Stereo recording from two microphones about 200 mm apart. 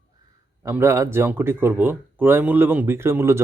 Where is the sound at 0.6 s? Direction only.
15° right (ahead or behind).